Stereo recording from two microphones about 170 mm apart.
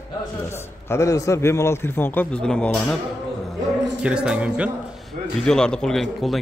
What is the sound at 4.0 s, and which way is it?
Speech, 5° right (ahead or behind).